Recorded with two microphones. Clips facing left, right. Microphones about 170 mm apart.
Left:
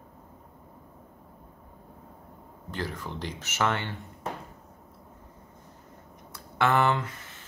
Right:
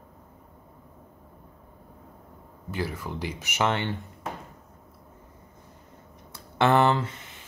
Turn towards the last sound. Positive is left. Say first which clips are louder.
# right 3 dB
turn(degrees=-30)  # may be behind; listen again after turning